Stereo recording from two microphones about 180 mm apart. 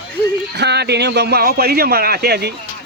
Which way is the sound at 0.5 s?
65° right (ahead or behind).